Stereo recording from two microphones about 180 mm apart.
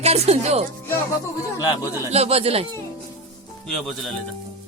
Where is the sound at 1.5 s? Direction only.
20° left (ahead or behind).